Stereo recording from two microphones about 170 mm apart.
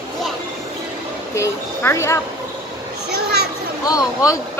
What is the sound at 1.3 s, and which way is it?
Speech, 15° left (ahead or behind).